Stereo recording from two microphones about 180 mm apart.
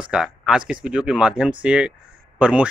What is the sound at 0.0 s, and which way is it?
Speech, 5° right (ahead or behind).